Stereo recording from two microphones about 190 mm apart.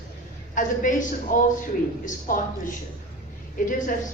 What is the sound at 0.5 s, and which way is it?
A woman's voice, 45° left (ahead or behind).